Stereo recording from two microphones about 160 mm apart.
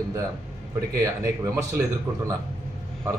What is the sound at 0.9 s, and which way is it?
Speech, 20° right (ahead or behind).